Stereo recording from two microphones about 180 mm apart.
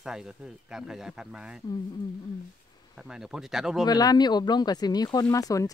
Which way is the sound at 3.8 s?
20° left (ahead or behind).